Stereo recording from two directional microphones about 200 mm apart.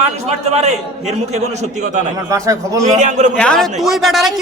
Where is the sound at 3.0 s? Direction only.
35° right (ahead or behind).